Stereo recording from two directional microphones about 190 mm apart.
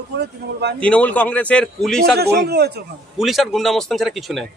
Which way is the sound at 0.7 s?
5° left (ahead or behind).